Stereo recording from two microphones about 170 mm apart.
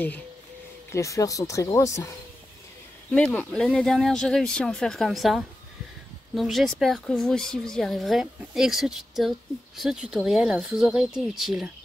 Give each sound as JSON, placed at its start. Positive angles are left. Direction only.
{"t": 0.9, "sound": "speech", "side_deg": 20}